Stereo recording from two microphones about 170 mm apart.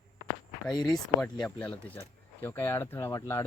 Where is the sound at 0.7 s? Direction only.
25° left (ahead or behind).